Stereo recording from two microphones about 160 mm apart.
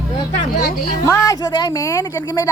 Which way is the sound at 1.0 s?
20° left (ahead or behind).